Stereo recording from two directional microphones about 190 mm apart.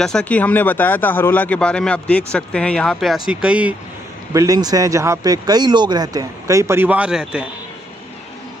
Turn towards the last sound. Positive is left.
turn(degrees=-5)  # may be behind; listen again after turning